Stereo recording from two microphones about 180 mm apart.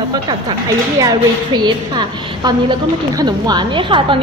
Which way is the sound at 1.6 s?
25° right (ahead or behind).